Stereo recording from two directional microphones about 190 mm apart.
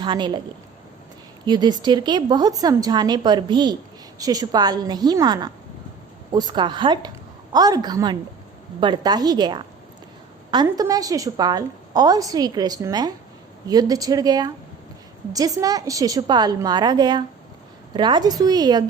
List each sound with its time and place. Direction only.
0.0 s a woman's voice: 25° right (ahead or behind)
1.5 s a woman's voice: 20° right (ahead or behind)